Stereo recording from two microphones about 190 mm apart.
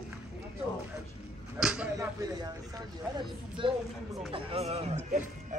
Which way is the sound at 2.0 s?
20° right (ahead or behind).